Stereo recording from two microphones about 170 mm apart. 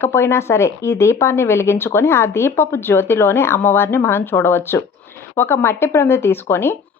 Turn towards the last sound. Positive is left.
turn(degrees=15)  # may be behind; listen again after turning